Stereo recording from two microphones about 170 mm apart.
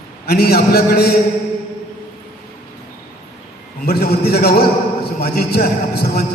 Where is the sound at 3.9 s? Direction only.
65° left (ahead or behind).